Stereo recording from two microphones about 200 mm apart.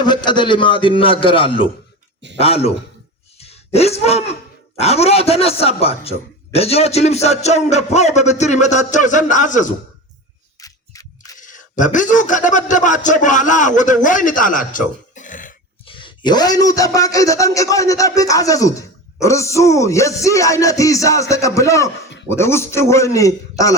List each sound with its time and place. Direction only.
0.0 s a man's voice: 20° left (ahead or behind)
3.3 s a sound: 30° left (ahead or behind)
4.8 s a man's voice: 30° left (ahead or behind)
10.6 s camera: 15° left (ahead or behind)
11.3 s a man's voice: 40° left (ahead or behind)
15.9 s a man's voice: 25° left (ahead or behind)